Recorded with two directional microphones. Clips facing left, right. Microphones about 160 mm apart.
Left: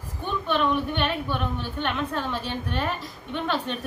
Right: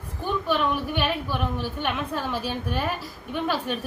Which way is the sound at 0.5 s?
5° right (ahead or behind).